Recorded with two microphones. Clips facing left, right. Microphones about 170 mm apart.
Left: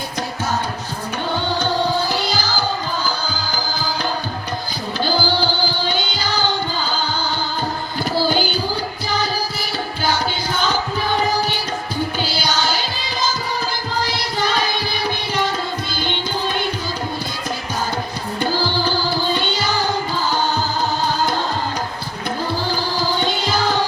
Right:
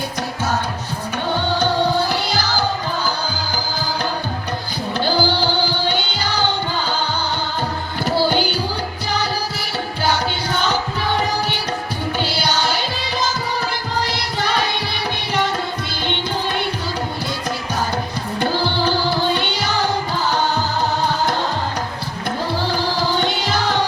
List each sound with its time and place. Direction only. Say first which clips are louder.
2.0 s music: even; 65° right (ahead or behind)
4.9 s music: right 1 dB; 65° right (ahead or behind)